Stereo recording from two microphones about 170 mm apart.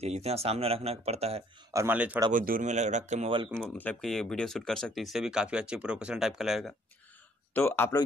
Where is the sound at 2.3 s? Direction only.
55° right (ahead or behind).